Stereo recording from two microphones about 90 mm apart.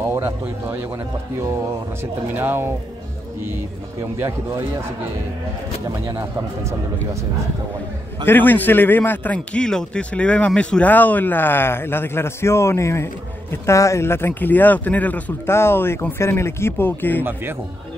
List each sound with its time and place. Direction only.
0.1 s speech: 25° right (ahead or behind)
2.3 s speech: 25° right (ahead or behind)
8.3 s a man's voice: 20° left (ahead or behind)
17.2 s speech: 25° right (ahead or behind)